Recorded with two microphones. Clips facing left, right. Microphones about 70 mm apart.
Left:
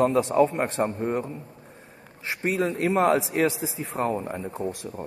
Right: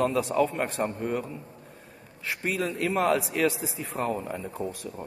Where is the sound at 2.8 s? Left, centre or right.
Left.